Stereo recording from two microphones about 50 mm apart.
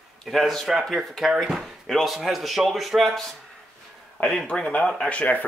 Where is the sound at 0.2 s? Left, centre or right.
Centre.